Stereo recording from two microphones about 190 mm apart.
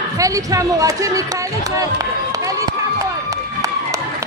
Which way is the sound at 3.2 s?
20° right (ahead or behind).